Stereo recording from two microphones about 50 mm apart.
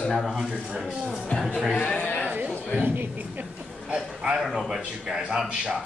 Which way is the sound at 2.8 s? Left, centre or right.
Right.